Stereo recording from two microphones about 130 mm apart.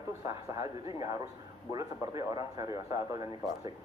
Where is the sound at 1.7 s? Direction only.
30° right (ahead or behind).